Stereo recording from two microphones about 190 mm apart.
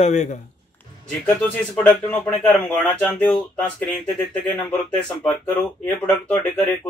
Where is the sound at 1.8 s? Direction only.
10° left (ahead or behind).